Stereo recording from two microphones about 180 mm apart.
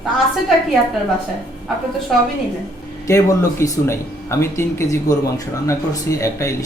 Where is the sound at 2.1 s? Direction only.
Centre (ahead or behind).